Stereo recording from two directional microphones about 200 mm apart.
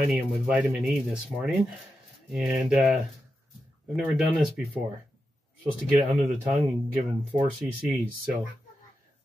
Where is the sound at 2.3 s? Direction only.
5° right (ahead or behind).